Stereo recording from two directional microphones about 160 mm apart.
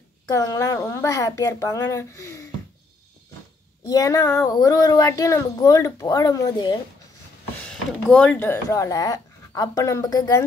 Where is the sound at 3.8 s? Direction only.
20° left (ahead or behind).